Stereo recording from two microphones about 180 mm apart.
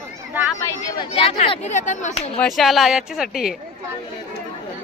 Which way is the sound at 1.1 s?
35° left (ahead or behind).